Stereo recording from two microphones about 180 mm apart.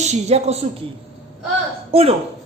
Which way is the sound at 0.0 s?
40° right (ahead or behind).